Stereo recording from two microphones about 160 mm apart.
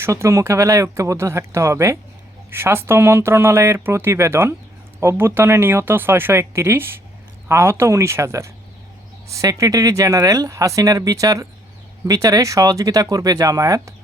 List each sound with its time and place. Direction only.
0.0 s speech: 15° right (ahead or behind)